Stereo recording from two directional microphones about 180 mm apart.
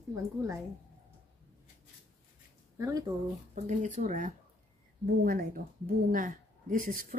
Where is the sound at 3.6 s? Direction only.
40° right (ahead or behind).